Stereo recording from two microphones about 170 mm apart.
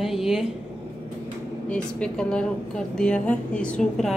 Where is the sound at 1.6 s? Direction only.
5° left (ahead or behind).